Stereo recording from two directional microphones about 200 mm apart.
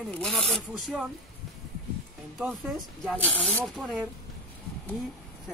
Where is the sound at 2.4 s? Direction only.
Centre (ahead or behind).